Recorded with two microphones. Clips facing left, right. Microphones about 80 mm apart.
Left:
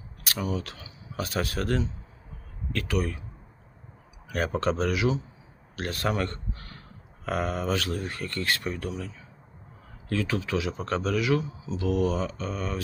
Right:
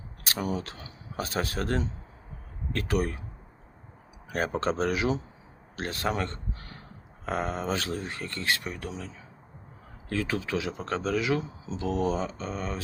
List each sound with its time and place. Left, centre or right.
0.5 s a man's voice: right
4.3 s speech: right
5.7 s speech: right
10.1 s speech: right